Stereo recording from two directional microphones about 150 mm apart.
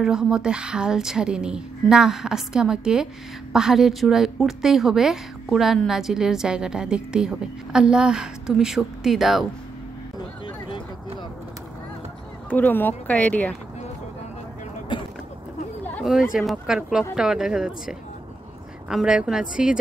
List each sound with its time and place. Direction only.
0.0 s a woman's voice: 5° right (ahead or behind)
10.1 s a sound: 30° left (ahead or behind)
12.4 s speech: 10° left (ahead or behind)
14.9 s vehicle: 30° left (ahead or behind)
15.8 s chatter: 10° left (ahead or behind)
16.3 s a woman's voice: 5° right (ahead or behind)